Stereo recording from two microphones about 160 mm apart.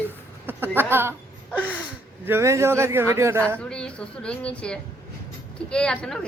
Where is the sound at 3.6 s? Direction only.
5° left (ahead or behind).